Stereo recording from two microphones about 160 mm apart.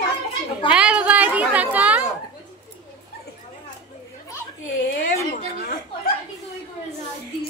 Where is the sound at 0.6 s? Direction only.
5° right (ahead or behind).